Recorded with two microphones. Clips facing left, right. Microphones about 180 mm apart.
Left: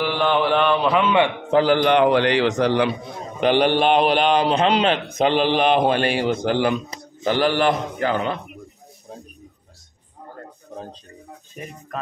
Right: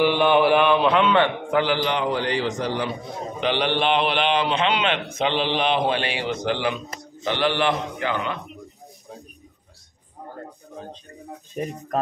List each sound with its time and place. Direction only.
0.0 s mantra: 15° right (ahead or behind); by 1.3 s 10° left (ahead or behind)
1.7 s a man's voice: 55° left (ahead or behind); by 2.9 s 75° left (ahead or behind)
3.3 s a man's voice: 45° left (ahead or behind)
11.6 s speech: 40° right (ahead or behind)